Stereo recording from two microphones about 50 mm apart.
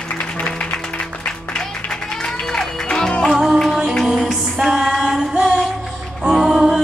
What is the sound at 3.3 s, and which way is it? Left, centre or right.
Music, centre.